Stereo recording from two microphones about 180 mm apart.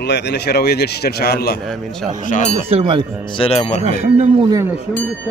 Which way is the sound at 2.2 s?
45° left (ahead or behind).